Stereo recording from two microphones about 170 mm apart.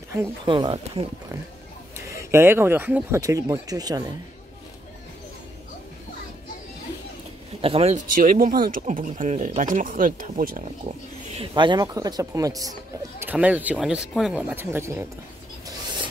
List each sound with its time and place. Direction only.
0.5 s speech: 30° right (ahead or behind)
2.0 s speech: 15° right (ahead or behind)
7.6 s speech: 35° right (ahead or behind)
8.1 s speech: 55° right (ahead or behind)
11.3 s speech: 25° right (ahead or behind)
13.2 s speech: 10° right (ahead or behind)